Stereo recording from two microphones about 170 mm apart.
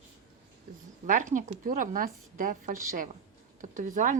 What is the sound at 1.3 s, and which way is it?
A woman's voice, 50° right (ahead or behind).